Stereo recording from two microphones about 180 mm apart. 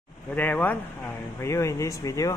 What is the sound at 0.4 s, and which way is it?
Speech, 10° left (ahead or behind).